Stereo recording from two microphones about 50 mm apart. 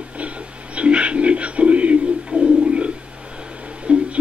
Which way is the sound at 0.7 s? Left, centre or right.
Right.